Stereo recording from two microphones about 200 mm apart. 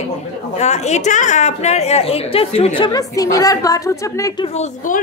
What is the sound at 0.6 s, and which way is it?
A woman's voice, 35° left (ahead or behind).